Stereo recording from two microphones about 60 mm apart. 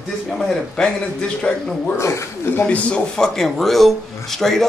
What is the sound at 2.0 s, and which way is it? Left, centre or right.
Speech, left.